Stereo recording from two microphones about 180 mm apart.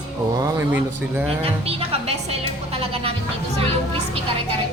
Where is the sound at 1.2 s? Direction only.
35° right (ahead or behind).